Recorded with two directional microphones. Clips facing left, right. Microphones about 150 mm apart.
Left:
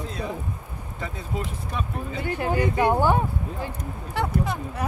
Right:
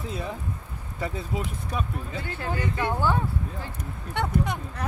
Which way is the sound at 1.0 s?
5° right (ahead or behind).